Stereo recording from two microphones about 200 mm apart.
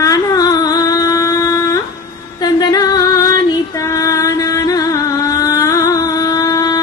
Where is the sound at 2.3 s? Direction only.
20° left (ahead or behind).